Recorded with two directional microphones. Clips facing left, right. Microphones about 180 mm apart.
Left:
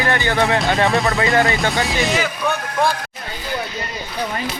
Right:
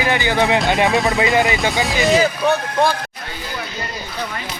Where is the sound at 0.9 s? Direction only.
Centre (ahead or behind).